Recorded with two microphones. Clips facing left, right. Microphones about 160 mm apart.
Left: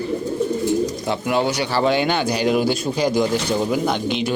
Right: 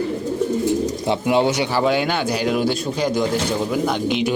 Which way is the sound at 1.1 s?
25° right (ahead or behind).